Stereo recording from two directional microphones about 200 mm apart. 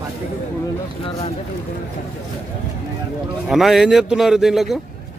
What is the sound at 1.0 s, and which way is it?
Speech, 30° left (ahead or behind).